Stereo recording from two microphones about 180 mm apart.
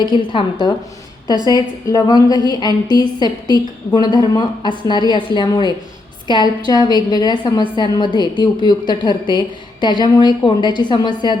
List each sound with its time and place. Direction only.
0.0 s a woman's voice: 25° left (ahead or behind)
1.5 s a woman's voice: 20° left (ahead or behind)